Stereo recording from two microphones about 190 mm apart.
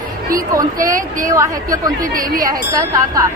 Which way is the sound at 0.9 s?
45° right (ahead or behind).